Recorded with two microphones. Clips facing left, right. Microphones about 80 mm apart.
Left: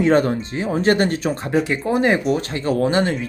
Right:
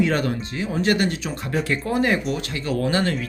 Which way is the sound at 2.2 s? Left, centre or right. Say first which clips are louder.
Left 6 dB; left.